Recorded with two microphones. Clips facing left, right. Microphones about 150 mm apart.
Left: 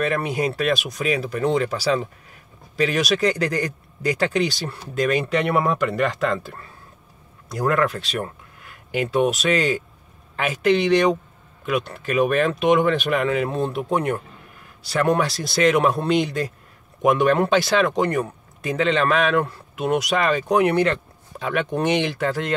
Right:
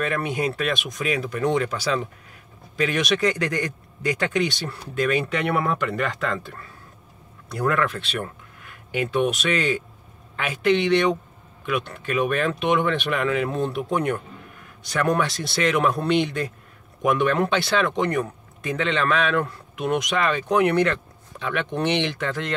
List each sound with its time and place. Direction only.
0.0 s speech: 40° left (ahead or behind)